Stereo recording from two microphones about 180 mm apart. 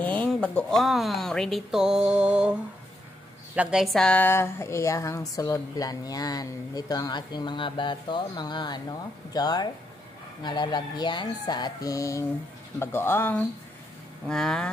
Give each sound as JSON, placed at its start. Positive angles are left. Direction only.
{"t": 0.0, "sound": "a woman's voice", "side_deg": 10}